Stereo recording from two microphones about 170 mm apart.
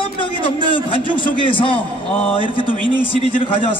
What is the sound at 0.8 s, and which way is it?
A man's voice, 30° left (ahead or behind).